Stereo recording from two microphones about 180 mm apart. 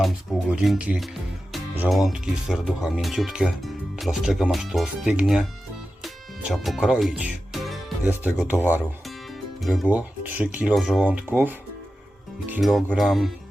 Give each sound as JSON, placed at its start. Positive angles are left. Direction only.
{"t": 0.5, "sound": "speech", "side_deg": -5}
{"t": 6.5, "sound": "speech", "side_deg": 0}